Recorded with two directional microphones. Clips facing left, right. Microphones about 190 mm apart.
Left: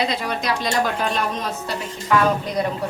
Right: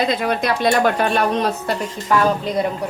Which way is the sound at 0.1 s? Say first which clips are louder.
Right 5 dB; 55° right (ahead or behind).